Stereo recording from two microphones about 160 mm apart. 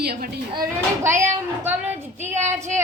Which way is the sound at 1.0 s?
15° right (ahead or behind).